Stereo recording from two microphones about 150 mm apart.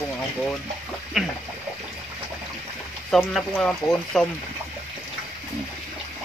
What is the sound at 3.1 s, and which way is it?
Speech, 5° left (ahead or behind).